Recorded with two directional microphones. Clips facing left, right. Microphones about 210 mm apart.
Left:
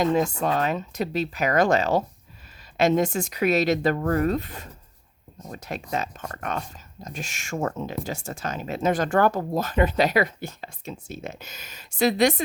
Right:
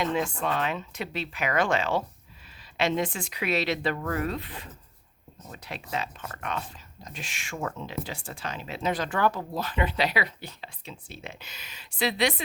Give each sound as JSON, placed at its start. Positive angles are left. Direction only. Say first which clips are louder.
{"t": 0.0, "sound": "speech", "louder": "left 6 dB", "side_deg": 40}